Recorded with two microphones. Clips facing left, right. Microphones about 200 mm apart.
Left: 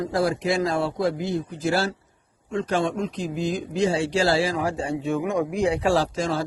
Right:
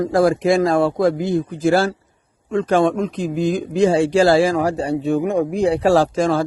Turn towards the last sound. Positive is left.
turn(degrees=-50)  # may be behind; listen again after turning